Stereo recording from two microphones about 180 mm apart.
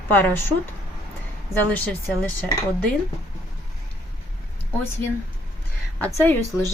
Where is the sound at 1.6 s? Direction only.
10° left (ahead or behind).